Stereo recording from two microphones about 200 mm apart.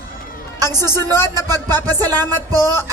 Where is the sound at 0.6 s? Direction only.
15° left (ahead or behind).